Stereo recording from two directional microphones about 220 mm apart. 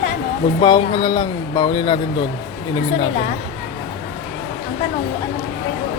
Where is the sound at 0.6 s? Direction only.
20° left (ahead or behind).